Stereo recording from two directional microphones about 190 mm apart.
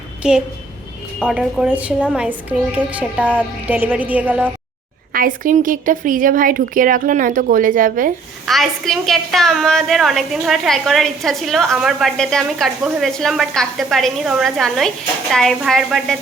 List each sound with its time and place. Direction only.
0.2 s a woman's voice: 5° right (ahead or behind)
5.1 s a woman's voice: 45° right (ahead or behind)
8.4 s a woman's voice: centre (ahead or behind)